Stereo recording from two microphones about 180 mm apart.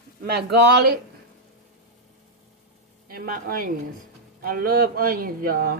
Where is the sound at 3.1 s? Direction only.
55° right (ahead or behind).